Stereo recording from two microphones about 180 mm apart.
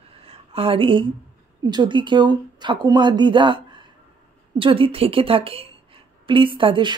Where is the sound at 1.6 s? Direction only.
25° right (ahead or behind).